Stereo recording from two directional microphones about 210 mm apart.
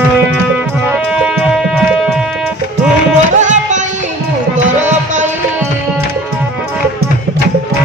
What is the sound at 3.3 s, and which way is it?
Music, 35° right (ahead or behind).